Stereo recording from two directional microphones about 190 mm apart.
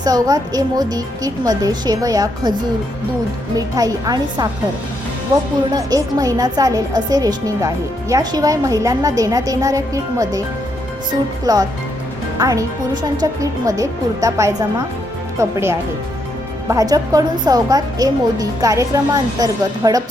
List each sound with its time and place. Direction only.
0.0 s a woman's voice: 20° right (ahead or behind)
3.8 s a woman's voice: 20° right (ahead or behind)
5.7 s a woman's voice: 20° right (ahead or behind)
11.5 s a woman's voice: 20° right (ahead or behind)